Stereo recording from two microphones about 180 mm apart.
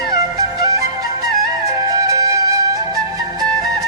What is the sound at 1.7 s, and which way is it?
Flute, 20° right (ahead or behind).